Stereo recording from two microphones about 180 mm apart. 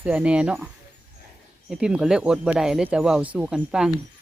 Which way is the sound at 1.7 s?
5° right (ahead or behind).